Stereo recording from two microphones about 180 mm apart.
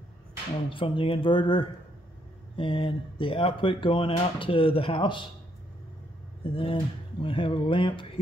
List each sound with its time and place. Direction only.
0.7 s speech: 30° left (ahead or behind)
6.4 s speech: 30° left (ahead or behind)